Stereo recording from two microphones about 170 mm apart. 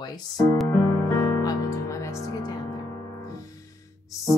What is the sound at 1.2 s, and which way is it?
Music, 20° left (ahead or behind).